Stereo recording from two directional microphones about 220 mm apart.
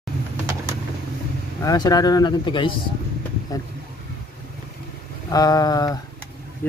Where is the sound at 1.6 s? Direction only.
15° left (ahead or behind).